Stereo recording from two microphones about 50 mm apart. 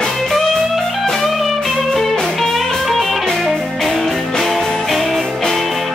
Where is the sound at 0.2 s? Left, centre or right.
Centre.